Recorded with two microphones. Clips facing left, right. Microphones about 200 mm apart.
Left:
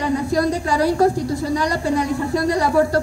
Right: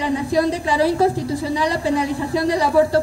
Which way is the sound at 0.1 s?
Centre (ahead or behind).